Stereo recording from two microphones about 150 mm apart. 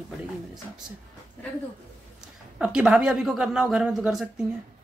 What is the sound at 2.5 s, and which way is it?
Speech, 5° right (ahead or behind).